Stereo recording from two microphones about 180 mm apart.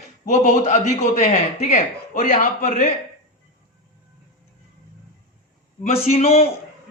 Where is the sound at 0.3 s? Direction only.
40° left (ahead or behind).